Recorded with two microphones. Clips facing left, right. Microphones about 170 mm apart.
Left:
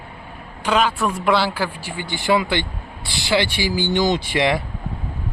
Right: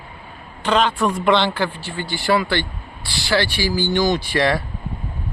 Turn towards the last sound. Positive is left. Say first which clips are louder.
# even
turn(degrees=20)  # may be behind; listen again after turning